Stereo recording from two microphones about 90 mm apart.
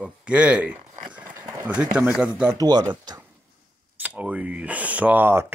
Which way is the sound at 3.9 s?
15° right (ahead or behind).